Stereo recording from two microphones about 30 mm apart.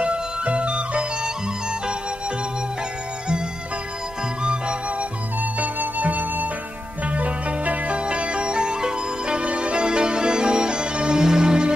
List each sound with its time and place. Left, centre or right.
0.0 s music: right
4.4 s music: right
5.4 s music: right
7.1 s music: right
7.9 s music: right